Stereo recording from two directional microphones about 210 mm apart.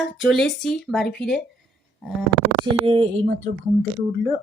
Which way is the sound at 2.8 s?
30° right (ahead or behind).